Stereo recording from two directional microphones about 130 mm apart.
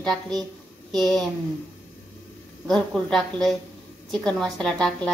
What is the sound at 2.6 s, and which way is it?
A woman's voice, centre (ahead or behind).